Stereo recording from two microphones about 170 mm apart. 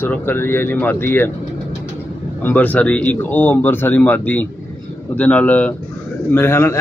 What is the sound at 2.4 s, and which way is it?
A man's voice, 10° left (ahead or behind).